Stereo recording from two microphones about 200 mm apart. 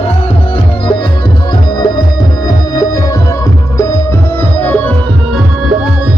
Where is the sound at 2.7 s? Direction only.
15° left (ahead or behind).